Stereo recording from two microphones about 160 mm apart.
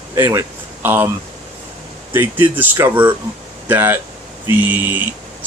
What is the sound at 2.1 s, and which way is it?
Speech, 10° right (ahead or behind).